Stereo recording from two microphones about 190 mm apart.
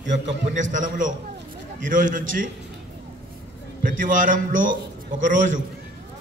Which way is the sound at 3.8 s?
45° right (ahead or behind).